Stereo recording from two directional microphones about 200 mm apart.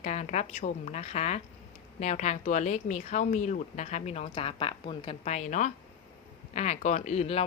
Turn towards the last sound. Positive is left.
turn(degrees=30)  # may be behind; listen again after turning